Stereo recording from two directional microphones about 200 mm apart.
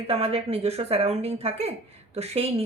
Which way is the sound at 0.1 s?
30° right (ahead or behind).